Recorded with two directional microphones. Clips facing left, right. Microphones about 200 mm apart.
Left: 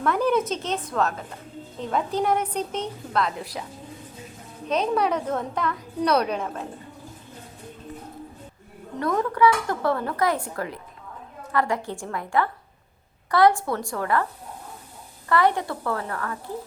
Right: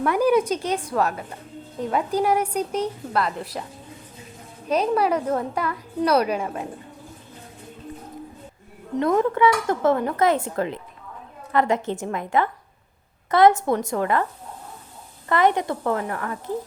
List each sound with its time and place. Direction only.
0.0 s a woman's voice: 10° right (ahead or behind)
4.7 s a woman's voice: 5° right (ahead or behind)
9.0 s speech: 25° right (ahead or behind)
15.3 s speech: 20° right (ahead or behind)